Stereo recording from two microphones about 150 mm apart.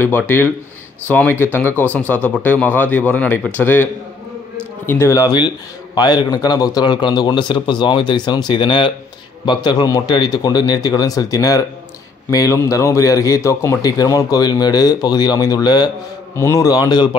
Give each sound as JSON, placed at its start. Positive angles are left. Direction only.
{"t": 0.0, "sound": "a man's voice", "side_deg": 15}